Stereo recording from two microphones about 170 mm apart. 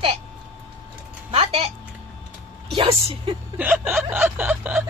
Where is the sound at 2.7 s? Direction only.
30° right (ahead or behind).